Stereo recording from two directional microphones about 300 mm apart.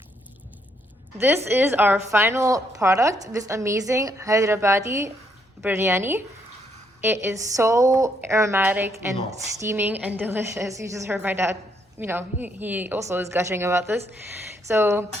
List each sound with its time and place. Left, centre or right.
1.5 s a woman's voice: centre